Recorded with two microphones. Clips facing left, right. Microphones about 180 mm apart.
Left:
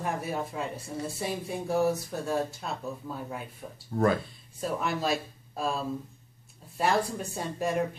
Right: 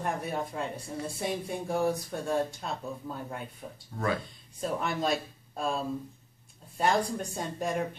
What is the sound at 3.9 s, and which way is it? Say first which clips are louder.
Speech: left 9 dB; 45° left (ahead or behind).